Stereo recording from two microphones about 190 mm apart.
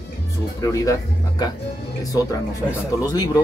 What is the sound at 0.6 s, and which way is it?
Speech, 15° left (ahead or behind).